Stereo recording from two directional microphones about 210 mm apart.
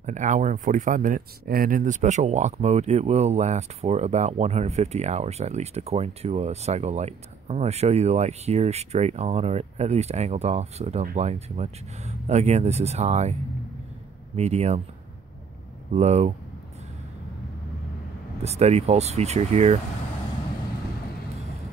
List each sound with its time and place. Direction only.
0.0 s speech: 35° right (ahead or behind)
15.9 s speech: 30° right (ahead or behind)
18.4 s speech: 30° right (ahead or behind)